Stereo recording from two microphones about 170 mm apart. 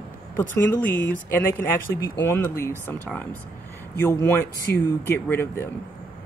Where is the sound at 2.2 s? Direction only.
15° left (ahead or behind).